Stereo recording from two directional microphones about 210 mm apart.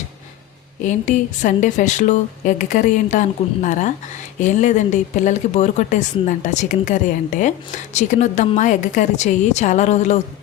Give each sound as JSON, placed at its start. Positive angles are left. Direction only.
{"t": 0.9, "sound": "a woman's voice", "side_deg": 35}